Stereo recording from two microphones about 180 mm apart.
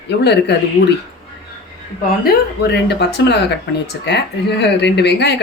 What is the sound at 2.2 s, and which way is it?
Speech, 65° left (ahead or behind).